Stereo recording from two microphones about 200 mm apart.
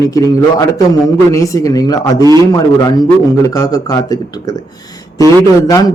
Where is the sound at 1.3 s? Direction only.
15° left (ahead or behind).